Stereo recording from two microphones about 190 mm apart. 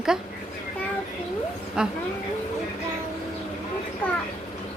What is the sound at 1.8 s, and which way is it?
Speech, 5° right (ahead or behind).